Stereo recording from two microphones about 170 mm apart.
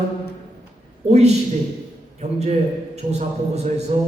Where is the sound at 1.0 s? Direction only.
40° right (ahead or behind).